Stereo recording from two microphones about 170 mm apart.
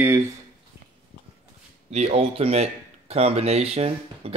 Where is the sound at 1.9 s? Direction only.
35° right (ahead or behind).